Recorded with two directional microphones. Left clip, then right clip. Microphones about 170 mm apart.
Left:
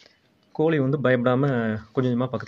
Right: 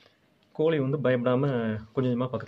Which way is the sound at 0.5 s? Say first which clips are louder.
Left 3 dB; 30° left (ahead or behind).